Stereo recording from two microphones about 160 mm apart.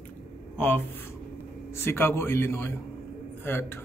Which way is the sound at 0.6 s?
10° left (ahead or behind).